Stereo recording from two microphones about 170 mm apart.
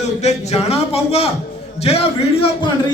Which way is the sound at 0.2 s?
40° left (ahead or behind).